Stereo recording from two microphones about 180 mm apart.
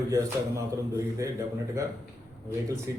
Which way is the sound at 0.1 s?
20° right (ahead or behind).